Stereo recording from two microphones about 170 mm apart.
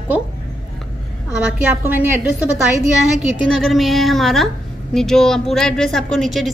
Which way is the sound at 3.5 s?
Centre (ahead or behind).